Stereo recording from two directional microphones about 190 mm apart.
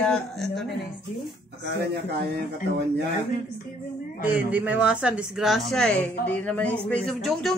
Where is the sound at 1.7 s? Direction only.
60° right (ahead or behind).